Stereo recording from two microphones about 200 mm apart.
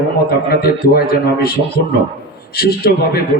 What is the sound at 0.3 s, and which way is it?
A man's voice, 50° left (ahead or behind).